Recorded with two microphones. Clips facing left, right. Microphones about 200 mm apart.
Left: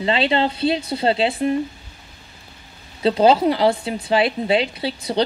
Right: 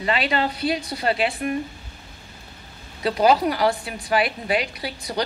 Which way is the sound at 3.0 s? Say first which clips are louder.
Left 3 dB; 25° left (ahead or behind).